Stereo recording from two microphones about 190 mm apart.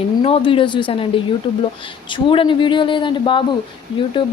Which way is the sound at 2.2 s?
25° left (ahead or behind).